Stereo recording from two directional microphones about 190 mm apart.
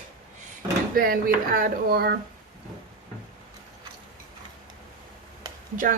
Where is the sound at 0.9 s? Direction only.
50° right (ahead or behind).